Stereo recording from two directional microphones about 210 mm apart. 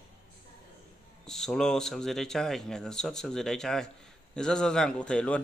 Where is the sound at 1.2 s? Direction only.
5° left (ahead or behind).